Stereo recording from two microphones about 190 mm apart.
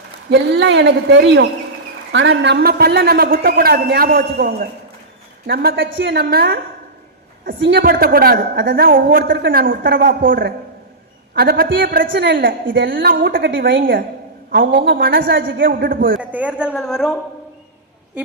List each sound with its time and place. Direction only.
0.3 s speech: 65° right (ahead or behind)
2.1 s a woman's voice: 85° right; by 12.5 s 60° right (ahead or behind)
12.6 s a woman's voice: 75° right (ahead or behind); by 15.4 s 50° right (ahead or behind)
15.4 s speech: 75° right (ahead or behind)
15.6 s a woman's voice: 50° right (ahead or behind)
16.3 s a woman's voice: 5° right (ahead or behind)